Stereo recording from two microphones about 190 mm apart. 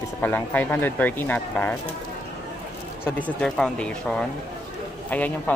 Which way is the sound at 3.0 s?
10° left (ahead or behind).